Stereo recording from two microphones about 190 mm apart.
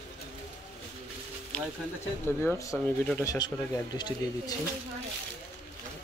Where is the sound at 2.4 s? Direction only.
15° left (ahead or behind).